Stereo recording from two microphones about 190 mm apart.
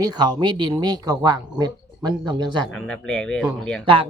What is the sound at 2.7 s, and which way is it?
Speech, 5° left (ahead or behind).